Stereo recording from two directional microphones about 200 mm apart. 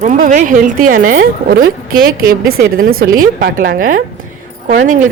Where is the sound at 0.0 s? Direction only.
40° right (ahead or behind).